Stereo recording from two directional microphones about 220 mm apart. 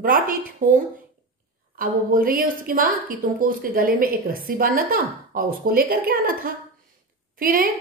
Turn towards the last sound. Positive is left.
turn(degrees=-40)  # may be behind; listen again after turning